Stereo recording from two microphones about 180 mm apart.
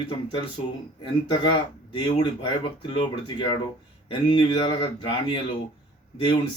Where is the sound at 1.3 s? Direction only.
25° left (ahead or behind).